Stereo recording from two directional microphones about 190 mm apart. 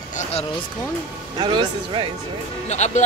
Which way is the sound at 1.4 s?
25° right (ahead or behind).